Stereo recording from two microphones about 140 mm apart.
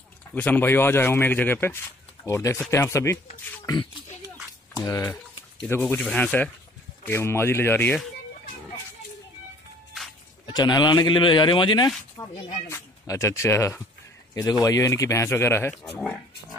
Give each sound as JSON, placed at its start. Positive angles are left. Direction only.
{"t": 0.3, "sound": "speech", "side_deg": 10}
{"t": 3.6, "sound": "oink", "side_deg": 30}
{"t": 4.8, "sound": "speech", "side_deg": 20}
{"t": 5.7, "sound": "speech", "side_deg": 10}
{"t": 10.4, "sound": "speech", "side_deg": 30}